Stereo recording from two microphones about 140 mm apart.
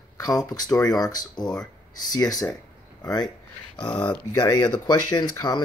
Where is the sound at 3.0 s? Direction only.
30° left (ahead or behind).